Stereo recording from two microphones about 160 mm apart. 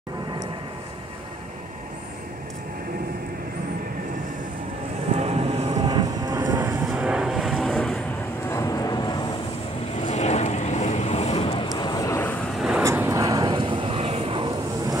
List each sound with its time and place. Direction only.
5.1 s vehicle: 40° right (ahead or behind)
5.8 s vehicle: 25° right (ahead or behind)
6.9 s vehicle: 5° right (ahead or behind)
8.5 s vehicle: 20° left (ahead or behind)
10.0 s vehicle: 45° left (ahead or behind)
11.7 s vehicle: 25° left (ahead or behind)
12.5 s vehicle: 5° right (ahead or behind)
12.8 s vehicle: 15° right (ahead or behind); by 14.5 s 35° right (ahead or behind)